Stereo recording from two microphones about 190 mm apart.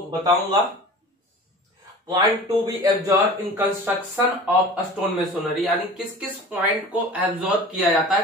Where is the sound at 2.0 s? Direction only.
20° right (ahead or behind).